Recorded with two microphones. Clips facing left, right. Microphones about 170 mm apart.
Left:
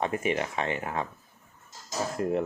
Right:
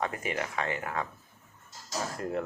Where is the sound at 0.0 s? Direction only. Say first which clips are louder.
Left 5 dB; 20° left (ahead or behind).